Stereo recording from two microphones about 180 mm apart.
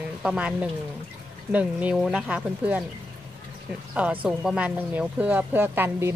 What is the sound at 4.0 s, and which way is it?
Speech, 5° right (ahead or behind).